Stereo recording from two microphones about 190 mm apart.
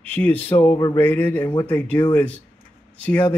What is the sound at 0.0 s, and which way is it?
Speech, 10° left (ahead or behind).